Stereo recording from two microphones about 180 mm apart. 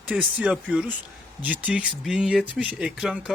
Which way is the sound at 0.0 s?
10° right (ahead or behind).